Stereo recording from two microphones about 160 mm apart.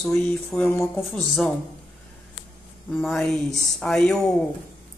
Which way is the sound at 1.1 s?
5° left (ahead or behind).